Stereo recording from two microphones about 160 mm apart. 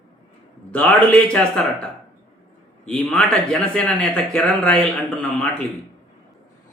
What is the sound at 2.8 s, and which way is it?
Speech, 5° left (ahead or behind).